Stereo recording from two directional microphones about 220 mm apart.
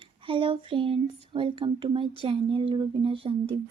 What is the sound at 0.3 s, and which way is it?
Speech, 25° right (ahead or behind).